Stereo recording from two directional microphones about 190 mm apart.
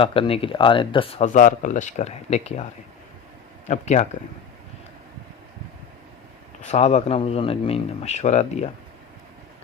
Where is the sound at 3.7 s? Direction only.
40° left (ahead or behind).